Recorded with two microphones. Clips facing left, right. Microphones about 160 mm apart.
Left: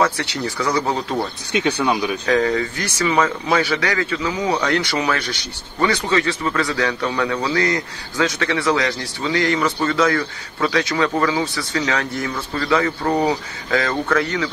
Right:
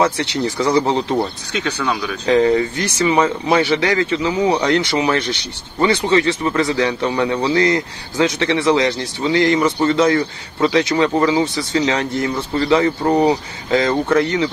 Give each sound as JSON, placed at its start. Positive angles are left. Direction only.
{"t": 0.6, "sound": "speech", "side_deg": -25}
{"t": 1.6, "sound": "speech", "side_deg": 20}
{"t": 2.2, "sound": "speech", "side_deg": -25}